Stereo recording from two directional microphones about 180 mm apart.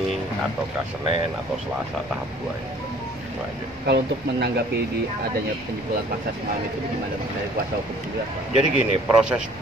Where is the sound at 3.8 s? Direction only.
65° right (ahead or behind).